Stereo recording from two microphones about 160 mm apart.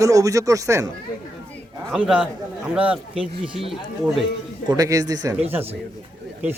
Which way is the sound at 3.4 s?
35° right (ahead or behind).